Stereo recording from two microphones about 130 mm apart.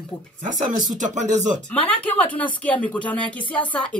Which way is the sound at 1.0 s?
70° right (ahead or behind).